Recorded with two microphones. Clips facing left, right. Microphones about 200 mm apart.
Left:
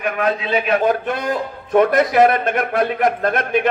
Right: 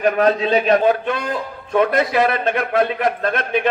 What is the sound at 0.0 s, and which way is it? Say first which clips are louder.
Speech: right 5 dB; 35° right (ahead or behind).